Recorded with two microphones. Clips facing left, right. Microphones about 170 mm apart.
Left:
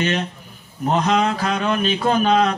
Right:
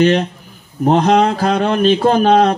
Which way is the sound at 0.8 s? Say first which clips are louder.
Right 6 dB; 35° right (ahead or behind).